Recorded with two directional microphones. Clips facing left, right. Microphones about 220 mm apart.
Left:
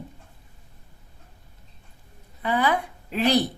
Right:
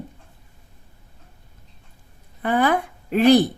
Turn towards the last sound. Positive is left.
turn(degrees=-50)  # may be behind; listen again after turning